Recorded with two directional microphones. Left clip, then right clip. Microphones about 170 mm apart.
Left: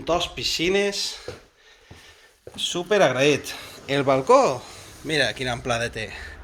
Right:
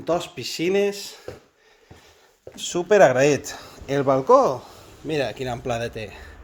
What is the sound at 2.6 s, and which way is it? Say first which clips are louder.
Speech: right 4 dB; 55° right (ahead or behind).